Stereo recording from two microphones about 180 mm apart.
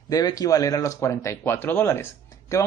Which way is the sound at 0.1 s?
20° left (ahead or behind).